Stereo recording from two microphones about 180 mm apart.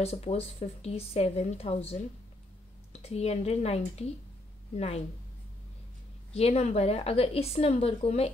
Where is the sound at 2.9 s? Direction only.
35° left (ahead or behind).